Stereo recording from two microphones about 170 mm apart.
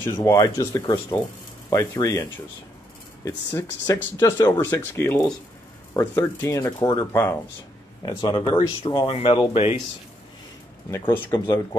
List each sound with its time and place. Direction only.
0.0 s speech: 15° left (ahead or behind)
3.8 s speech: 20° left (ahead or behind)
8.2 s speech: 30° left (ahead or behind)
10.9 s speech: 15° left (ahead or behind)
11.3 s speech: 25° left (ahead or behind)